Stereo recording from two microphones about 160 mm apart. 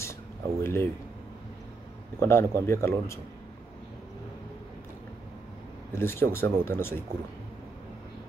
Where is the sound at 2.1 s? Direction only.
15° left (ahead or behind).